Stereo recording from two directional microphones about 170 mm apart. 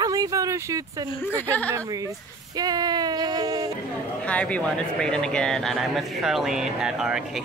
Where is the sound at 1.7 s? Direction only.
20° right (ahead or behind).